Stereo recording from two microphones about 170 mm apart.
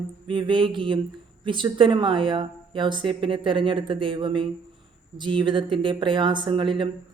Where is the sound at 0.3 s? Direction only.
30° right (ahead or behind).